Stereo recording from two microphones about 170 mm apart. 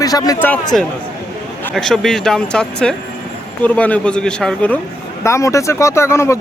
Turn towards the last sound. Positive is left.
turn(degrees=15)  # may be behind; listen again after turning